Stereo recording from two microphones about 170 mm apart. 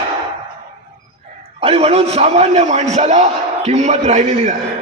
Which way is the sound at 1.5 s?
35° right (ahead or behind).